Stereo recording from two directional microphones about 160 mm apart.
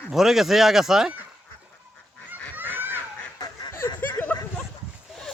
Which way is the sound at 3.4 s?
20° left (ahead or behind).